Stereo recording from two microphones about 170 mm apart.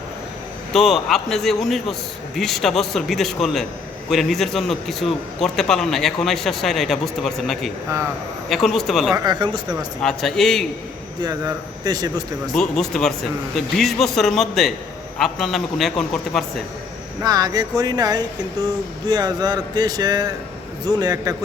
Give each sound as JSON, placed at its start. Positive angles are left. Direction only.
{"t": 0.7, "sound": "speech", "side_deg": 0}
{"t": 9.1, "sound": "speech", "side_deg": -25}
{"t": 10.0, "sound": "speech", "side_deg": 5}
{"t": 11.2, "sound": "speech", "side_deg": -20}
{"t": 12.5, "sound": "speech", "side_deg": 5}
{"t": 17.2, "sound": "speech", "side_deg": -20}